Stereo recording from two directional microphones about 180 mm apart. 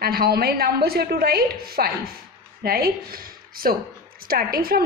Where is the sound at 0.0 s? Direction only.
60° right (ahead or behind).